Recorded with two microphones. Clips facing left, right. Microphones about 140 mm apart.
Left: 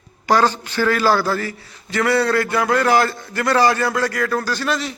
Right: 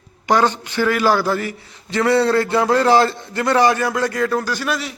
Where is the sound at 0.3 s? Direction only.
20° right (ahead or behind).